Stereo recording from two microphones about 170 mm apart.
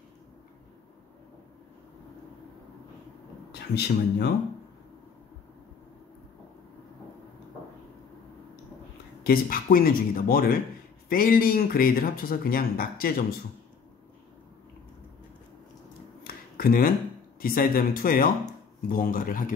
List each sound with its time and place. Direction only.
3.7 s speech: 75° left (ahead or behind)
9.2 s speech: 60° left (ahead or behind)
16.3 s a sound: 60° left (ahead or behind)
17.4 s speech: 60° left (ahead or behind)